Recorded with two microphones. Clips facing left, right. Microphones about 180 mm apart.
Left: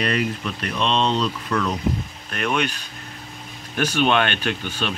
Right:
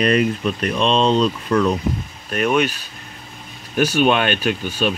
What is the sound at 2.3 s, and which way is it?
Speech, 10° right (ahead or behind).